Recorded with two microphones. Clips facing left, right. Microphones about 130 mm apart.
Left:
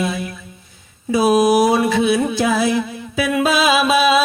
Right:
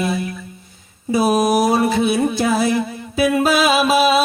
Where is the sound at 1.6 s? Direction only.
35° right (ahead or behind).